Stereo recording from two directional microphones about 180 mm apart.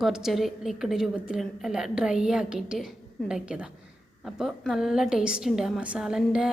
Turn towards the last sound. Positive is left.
turn(degrees=-5)  # may be behind; listen again after turning